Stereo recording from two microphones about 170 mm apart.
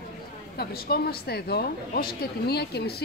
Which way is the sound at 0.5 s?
65° left (ahead or behind).